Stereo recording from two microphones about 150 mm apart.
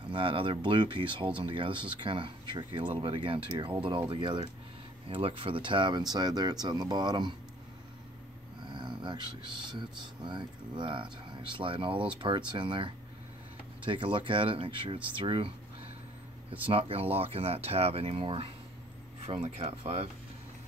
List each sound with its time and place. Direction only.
0.1 s speech: 35° right (ahead or behind)
8.6 s speech: 30° right (ahead or behind)
16.6 s speech: 40° right (ahead or behind)